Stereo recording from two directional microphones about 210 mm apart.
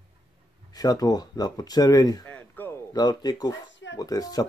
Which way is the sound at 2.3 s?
10° left (ahead or behind).